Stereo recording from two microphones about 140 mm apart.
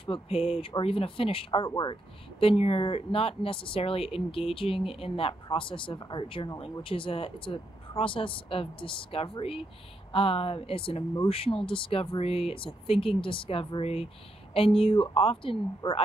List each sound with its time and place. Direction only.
0.0 s speech: 40° left (ahead or behind)
2.4 s speech: 45° left (ahead or behind)